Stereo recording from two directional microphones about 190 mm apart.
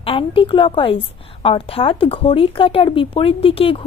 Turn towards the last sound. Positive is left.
turn(degrees=30)  # may be behind; listen again after turning